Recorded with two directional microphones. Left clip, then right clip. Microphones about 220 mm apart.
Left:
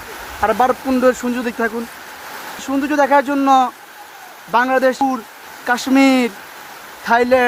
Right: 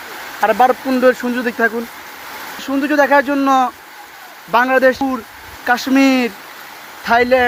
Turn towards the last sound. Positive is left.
turn(degrees=5)  # may be behind; listen again after turning